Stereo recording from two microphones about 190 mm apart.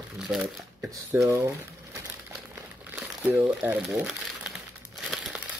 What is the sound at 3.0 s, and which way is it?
Speech, 5° right (ahead or behind).